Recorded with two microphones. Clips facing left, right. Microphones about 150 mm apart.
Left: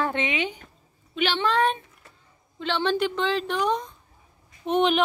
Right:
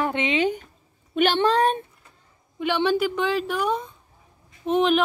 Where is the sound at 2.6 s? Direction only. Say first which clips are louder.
Right 3 dB; 10° right (ahead or behind).